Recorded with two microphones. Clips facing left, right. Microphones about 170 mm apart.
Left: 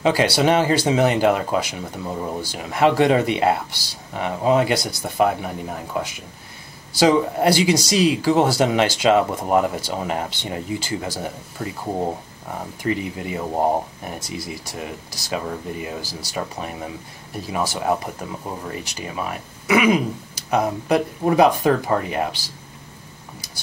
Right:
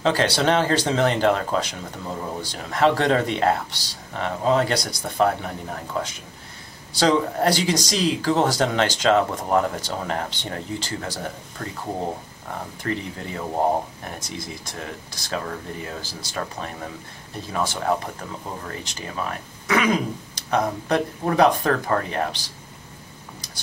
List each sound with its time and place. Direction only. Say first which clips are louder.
0.0 s speech: left 3 dB; 10° left (ahead or behind)
23.4 s cutlery: even; 10° left (ahead or behind)